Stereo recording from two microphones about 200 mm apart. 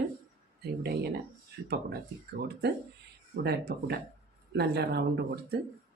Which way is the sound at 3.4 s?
50° right (ahead or behind).